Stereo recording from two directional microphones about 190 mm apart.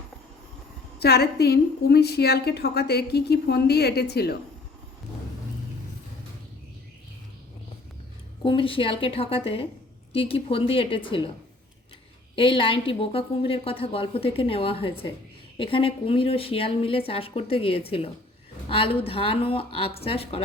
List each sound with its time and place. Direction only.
0.9 s a woman's voice: 60° left (ahead or behind)
8.4 s a woman's voice: 25° left (ahead or behind)
12.4 s a woman's voice: 25° left (ahead or behind)